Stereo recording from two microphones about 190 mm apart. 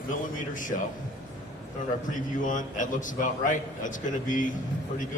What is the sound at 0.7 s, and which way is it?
Speech, 40° left (ahead or behind).